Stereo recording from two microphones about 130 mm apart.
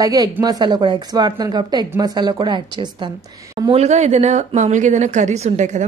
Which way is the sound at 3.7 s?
55° right (ahead or behind).